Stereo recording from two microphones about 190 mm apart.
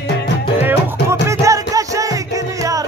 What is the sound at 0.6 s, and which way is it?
Music, 10° right (ahead or behind).